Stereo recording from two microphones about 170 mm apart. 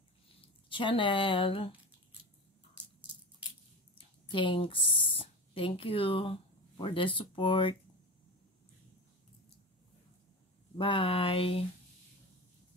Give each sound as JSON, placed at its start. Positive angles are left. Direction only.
{"t": 0.7, "sound": "speech", "side_deg": 30}
{"t": 4.3, "sound": "speech", "side_deg": 30}
{"t": 10.8, "sound": "mantra", "side_deg": 30}